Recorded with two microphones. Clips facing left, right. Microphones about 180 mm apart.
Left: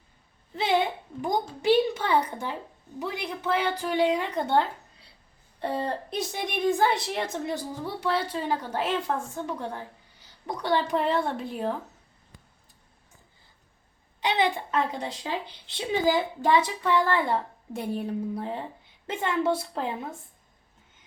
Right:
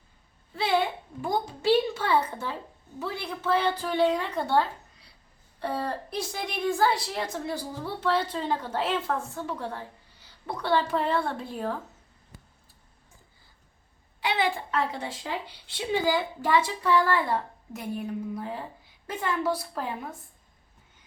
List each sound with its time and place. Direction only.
0.5 s a sound: 20° left (ahead or behind)
1.2 s a child's voice: 15° left (ahead or behind)
14.2 s a woman's voice: 20° left (ahead or behind)